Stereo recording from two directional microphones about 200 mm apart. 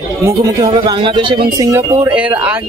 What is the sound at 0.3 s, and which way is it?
Speech, 20° right (ahead or behind).